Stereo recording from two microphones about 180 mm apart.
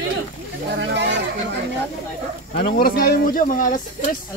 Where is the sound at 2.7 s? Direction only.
55° left (ahead or behind).